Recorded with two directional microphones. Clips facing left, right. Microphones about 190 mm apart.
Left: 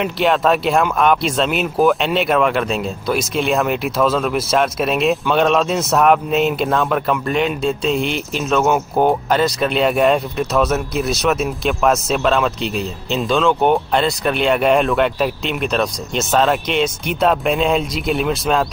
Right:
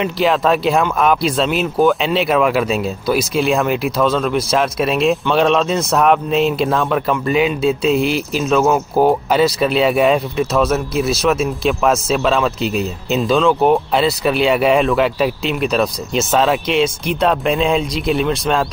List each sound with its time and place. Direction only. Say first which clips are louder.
0.0 s speech: right 1 dB; centre (ahead or behind)